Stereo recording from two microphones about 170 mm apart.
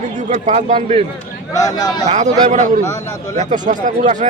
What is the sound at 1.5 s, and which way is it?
Speech, 20° left (ahead or behind).